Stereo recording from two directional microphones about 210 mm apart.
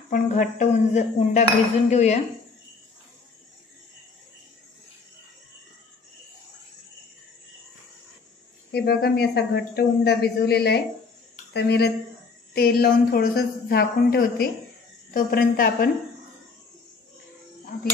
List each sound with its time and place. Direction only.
0.1 s speech: 35° left (ahead or behind)
8.7 s speech: 50° left (ahead or behind)
17.7 s speech: 45° left (ahead or behind)